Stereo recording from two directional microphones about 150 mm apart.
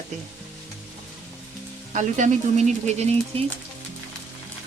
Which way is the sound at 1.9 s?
55° right (ahead or behind).